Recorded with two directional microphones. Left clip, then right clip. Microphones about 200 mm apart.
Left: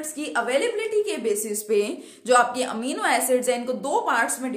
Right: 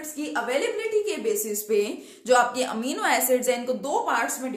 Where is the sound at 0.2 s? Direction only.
45° left (ahead or behind).